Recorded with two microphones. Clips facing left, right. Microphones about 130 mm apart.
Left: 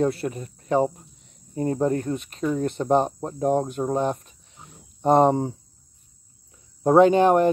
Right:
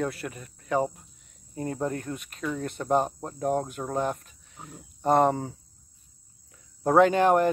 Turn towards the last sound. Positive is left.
turn(degrees=20)  # may be behind; listen again after turning